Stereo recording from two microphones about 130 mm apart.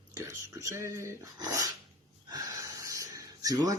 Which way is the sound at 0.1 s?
25° right (ahead or behind).